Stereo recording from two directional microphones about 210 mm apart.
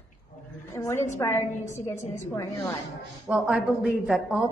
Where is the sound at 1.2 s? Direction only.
15° left (ahead or behind).